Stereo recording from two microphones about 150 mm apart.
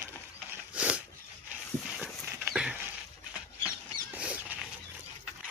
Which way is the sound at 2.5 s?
5° right (ahead or behind).